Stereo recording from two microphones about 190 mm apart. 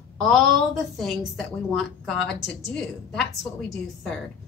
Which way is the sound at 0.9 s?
Centre (ahead or behind).